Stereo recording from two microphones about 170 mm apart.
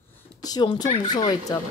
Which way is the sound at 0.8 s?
45° left (ahead or behind).